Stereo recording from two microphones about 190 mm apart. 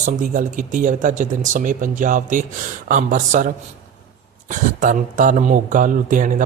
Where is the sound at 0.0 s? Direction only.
45° right (ahead or behind).